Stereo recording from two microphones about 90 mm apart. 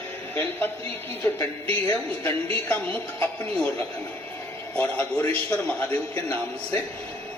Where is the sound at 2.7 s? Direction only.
20° left (ahead or behind).